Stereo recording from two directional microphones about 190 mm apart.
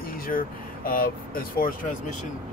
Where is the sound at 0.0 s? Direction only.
50° left (ahead or behind).